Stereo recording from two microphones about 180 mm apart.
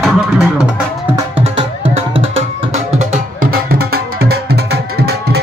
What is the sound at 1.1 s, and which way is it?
Music, 30° right (ahead or behind).